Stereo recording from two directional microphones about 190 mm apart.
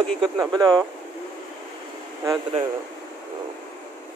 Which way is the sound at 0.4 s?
20° right (ahead or behind).